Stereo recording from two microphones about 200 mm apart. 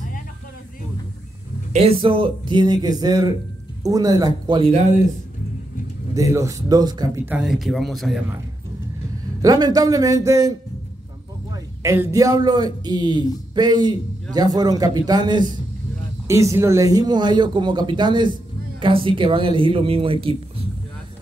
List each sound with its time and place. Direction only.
1.7 s speech: 30° right (ahead or behind)
6.1 s speech: 15° right (ahead or behind)
7.2 s speech: 5° right (ahead or behind)
9.4 s speech: 20° right (ahead or behind)
11.5 s a man's voice: 15° right (ahead or behind)